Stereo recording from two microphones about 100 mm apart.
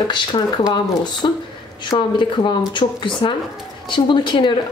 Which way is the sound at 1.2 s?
40° left (ahead or behind).